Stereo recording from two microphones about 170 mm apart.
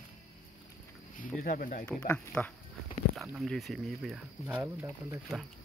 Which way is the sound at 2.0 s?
10° left (ahead or behind).